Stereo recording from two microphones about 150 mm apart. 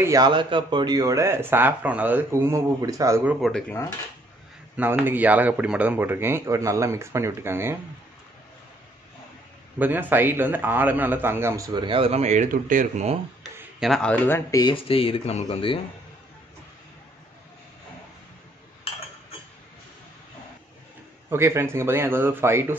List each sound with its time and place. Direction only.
0.0 s speech: 20° right (ahead or behind)
0.3 s speech: 35° right (ahead or behind)
3.3 s speech: centre (ahead or behind)
4.7 s a man's voice: 10° right (ahead or behind)
9.8 s a man's voice: 10° right (ahead or behind); by 13.2 s 45° right (ahead or behind)
13.7 s speech: centre (ahead or behind); by 14.7 s 20° left (ahead or behind)
14.7 s speech: 40° left (ahead or behind)
21.3 s a man's voice: 15° right (ahead or behind)